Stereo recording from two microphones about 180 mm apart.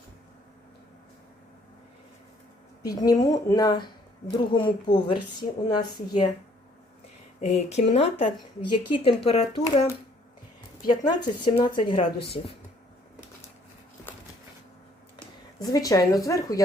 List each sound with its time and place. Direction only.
2.8 s a woman's voice: 20° left (ahead or behind)
7.4 s a woman's voice: 35° left (ahead or behind)
10.8 s a woman's voice: 25° left (ahead or behind)
15.6 s a woman's voice: 20° left (ahead or behind)